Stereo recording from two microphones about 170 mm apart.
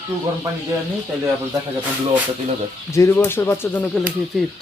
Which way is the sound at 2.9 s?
15° left (ahead or behind).